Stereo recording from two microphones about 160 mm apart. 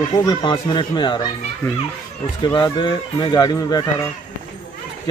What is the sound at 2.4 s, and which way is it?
Speech, 25° left (ahead or behind).